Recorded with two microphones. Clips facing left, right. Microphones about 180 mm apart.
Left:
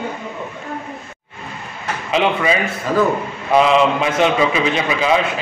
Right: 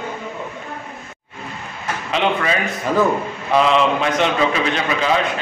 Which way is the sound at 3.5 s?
Centre (ahead or behind).